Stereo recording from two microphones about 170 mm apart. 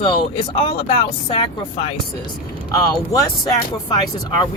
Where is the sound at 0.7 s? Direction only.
35° left (ahead or behind).